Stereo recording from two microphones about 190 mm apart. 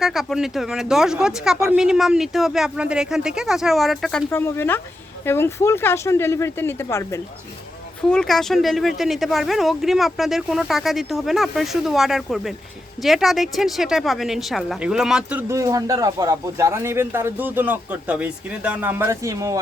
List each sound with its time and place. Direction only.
0.0 s speech: centre (ahead or behind)
1.5 s a woman's voice: 15° right (ahead or behind)
1.8 s speech: 5° right (ahead or behind)
4.3 s speech: 15° left (ahead or behind)
8.1 s a woman's voice: 5° left (ahead or behind); by 19.5 s 15° right (ahead or behind)